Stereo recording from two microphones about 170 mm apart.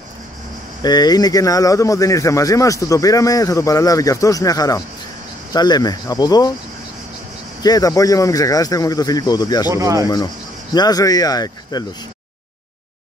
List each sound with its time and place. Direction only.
0.8 s speech: 25° left (ahead or behind)
7.6 s speech: 20° left (ahead or behind)
9.7 s speech: 20° right (ahead or behind)
10.0 s speech: 25° left (ahead or behind)